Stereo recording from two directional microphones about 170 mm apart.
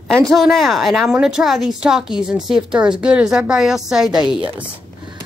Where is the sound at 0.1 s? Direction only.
Centre (ahead or behind).